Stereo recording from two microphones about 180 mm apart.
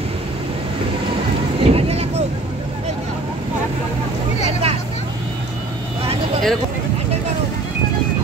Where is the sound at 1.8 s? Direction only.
35° right (ahead or behind).